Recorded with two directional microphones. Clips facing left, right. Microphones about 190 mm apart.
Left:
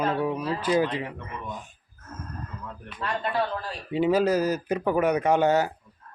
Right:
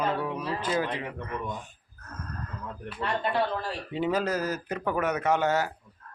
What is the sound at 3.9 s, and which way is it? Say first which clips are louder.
A man's voice: left 6 dB; 10° left (ahead or behind).